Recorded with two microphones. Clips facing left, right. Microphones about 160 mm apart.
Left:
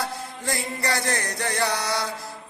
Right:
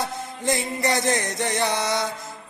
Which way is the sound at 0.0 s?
20° right (ahead or behind).